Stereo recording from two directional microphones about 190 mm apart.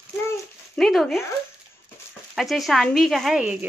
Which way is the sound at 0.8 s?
Centre (ahead or behind).